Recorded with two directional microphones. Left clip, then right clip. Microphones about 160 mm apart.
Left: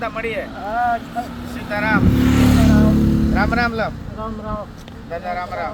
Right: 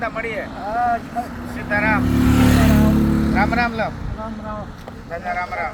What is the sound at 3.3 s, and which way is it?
Speech, 5° left (ahead or behind).